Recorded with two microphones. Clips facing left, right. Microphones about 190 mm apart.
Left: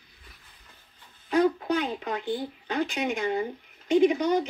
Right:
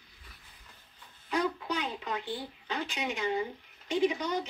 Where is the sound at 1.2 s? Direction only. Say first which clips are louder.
Left 8 dB; 50° left (ahead or behind).